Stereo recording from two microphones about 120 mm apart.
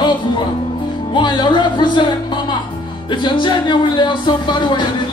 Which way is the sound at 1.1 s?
40° left (ahead or behind).